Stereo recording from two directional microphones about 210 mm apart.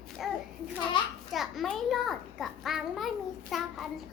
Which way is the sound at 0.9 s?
25° left (ahead or behind).